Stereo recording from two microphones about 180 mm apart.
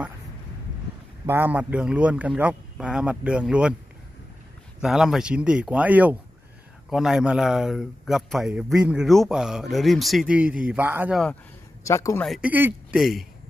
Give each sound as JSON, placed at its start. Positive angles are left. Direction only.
{"t": 1.2, "sound": "a man's voice", "side_deg": -10}
{"t": 4.8, "sound": "speech", "side_deg": 0}
{"t": 11.9, "sound": "speech", "side_deg": 15}
{"t": 12.3, "sound": "a man's voice", "side_deg": -5}